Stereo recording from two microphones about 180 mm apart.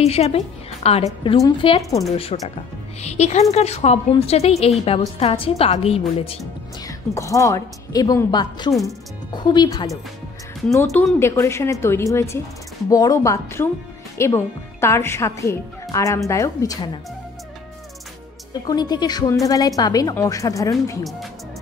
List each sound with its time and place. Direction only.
0.0 s a woman's voice: 35° left (ahead or behind)
7.2 s speech: 20° left (ahead or behind)
10.7 s a woman's voice: 15° left (ahead or behind)
18.5 s speech: 20° left (ahead or behind)
21.0 s speech: centre (ahead or behind)